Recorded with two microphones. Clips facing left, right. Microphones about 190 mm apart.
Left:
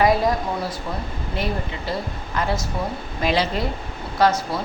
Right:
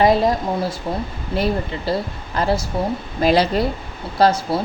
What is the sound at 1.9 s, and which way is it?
Speech, 35° right (ahead or behind).